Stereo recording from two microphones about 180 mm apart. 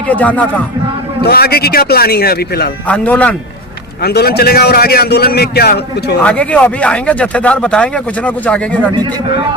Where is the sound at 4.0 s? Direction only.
60° left (ahead or behind).